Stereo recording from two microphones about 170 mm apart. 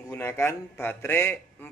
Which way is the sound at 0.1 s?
15° left (ahead or behind).